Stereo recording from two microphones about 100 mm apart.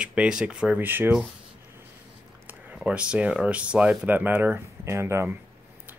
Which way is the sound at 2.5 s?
15° right (ahead or behind).